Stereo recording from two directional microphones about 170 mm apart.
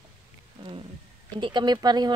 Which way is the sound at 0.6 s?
25° right (ahead or behind).